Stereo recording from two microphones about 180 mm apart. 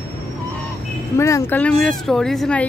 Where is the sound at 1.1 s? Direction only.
15° left (ahead or behind).